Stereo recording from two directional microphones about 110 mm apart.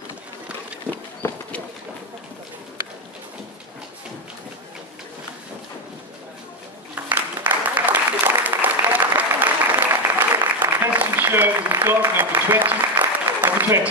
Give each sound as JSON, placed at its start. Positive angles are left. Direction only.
{"t": 7.0, "sound": "applause", "side_deg": -15}